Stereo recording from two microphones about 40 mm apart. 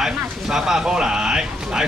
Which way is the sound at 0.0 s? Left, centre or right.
Centre.